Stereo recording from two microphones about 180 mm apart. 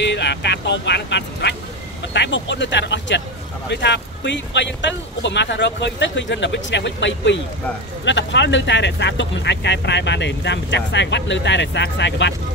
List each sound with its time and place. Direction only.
0.0 s speech: 75° left (ahead or behind)
2.1 s speech: 80° left